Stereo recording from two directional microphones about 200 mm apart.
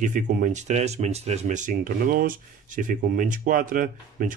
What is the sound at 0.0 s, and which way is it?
Speech, 40° right (ahead or behind).